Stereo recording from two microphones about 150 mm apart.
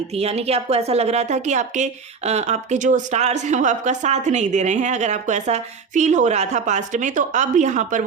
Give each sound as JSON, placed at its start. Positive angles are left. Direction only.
{"t": 0.1, "sound": "a woman's voice", "side_deg": -45}